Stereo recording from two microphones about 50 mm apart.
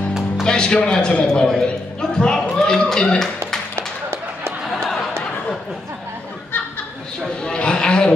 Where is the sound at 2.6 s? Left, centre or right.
Centre.